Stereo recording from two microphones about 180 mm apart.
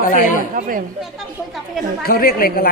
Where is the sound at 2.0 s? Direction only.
55° left (ahead or behind).